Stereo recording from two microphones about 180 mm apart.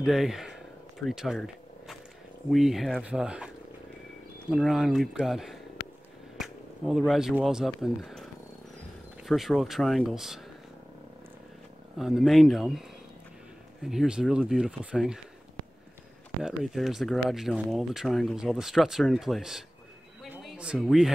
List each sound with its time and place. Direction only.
0.0 s a sound: centre (ahead or behind)
2.5 s speech: centre (ahead or behind)
4.5 s speech: centre (ahead or behind)
12.0 s speech: centre (ahead or behind)
13.8 s speech: 5° right (ahead or behind)
16.4 s speech: centre (ahead or behind)
20.2 s a sound: 5° right (ahead or behind)